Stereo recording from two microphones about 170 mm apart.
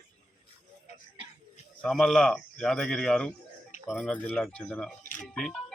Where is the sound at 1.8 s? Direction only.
Centre (ahead or behind).